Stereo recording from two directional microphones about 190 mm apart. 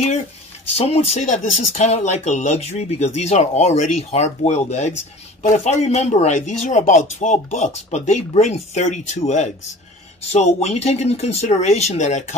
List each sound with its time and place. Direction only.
0.7 s speech: 35° left (ahead or behind)